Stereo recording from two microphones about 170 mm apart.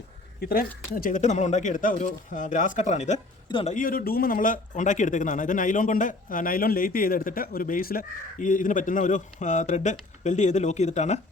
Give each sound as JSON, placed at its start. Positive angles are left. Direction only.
{"t": 0.4, "sound": "speech", "side_deg": 60}
{"t": 3.8, "sound": "speech", "side_deg": 55}